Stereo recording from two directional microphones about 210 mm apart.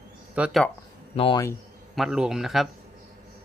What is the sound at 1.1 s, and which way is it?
Speech, 25° left (ahead or behind).